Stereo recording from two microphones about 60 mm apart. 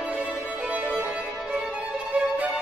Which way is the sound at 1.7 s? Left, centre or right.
Right.